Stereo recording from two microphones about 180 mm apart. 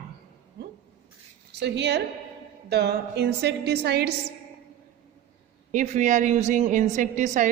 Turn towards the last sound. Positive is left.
turn(degrees=-45)  # may be behind; listen again after turning